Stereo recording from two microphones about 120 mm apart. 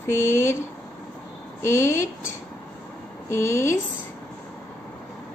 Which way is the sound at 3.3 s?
20° left (ahead or behind).